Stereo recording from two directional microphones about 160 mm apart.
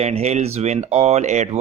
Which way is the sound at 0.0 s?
45° right (ahead or behind).